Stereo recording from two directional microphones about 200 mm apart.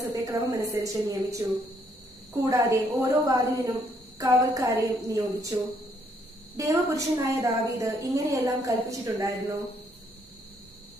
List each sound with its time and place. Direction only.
0.0 s a woman's voice: 15° right (ahead or behind)
2.5 s a woman's voice: 15° right (ahead or behind)
6.5 s a woman's voice: 15° right (ahead or behind)